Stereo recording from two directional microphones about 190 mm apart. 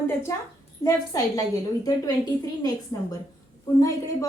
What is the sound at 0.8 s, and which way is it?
A woman's voice, 15° left (ahead or behind).